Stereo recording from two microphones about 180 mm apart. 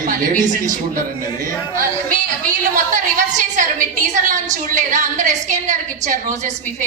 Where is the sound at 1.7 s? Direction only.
45° right (ahead or behind).